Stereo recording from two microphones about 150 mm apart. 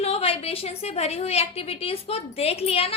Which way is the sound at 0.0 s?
40° left (ahead or behind).